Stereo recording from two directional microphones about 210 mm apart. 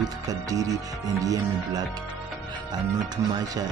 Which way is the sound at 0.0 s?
15° right (ahead or behind).